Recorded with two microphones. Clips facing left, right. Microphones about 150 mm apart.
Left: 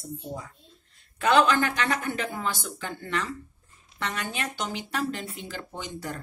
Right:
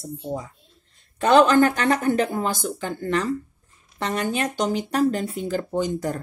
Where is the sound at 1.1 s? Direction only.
40° right (ahead or behind).